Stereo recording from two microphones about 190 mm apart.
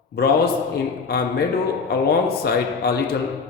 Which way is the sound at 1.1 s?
55° left (ahead or behind).